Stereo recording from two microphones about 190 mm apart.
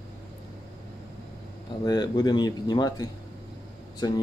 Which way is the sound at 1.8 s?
20° left (ahead or behind).